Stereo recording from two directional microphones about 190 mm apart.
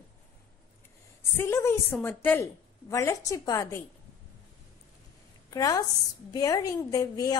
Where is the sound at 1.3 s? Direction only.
15° left (ahead or behind).